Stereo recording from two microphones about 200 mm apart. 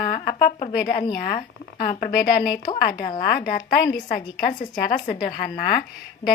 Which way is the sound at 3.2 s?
45° left (ahead or behind).